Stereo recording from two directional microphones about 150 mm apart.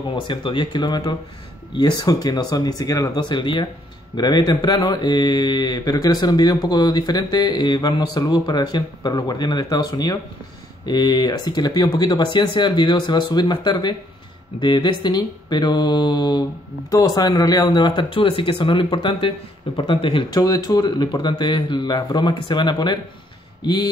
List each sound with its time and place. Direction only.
0.1 s speech: 35° left (ahead or behind)